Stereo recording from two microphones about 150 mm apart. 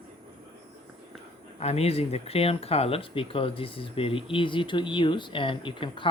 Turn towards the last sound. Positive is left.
turn(degrees=35)  # may be behind; listen again after turning